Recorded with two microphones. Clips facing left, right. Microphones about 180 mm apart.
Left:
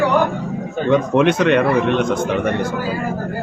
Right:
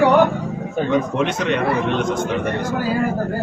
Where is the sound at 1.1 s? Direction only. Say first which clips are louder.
Left 6 dB; 60° left (ahead or behind).